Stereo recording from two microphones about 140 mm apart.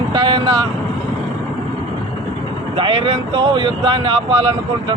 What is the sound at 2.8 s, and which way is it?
Speech, 35° right (ahead or behind).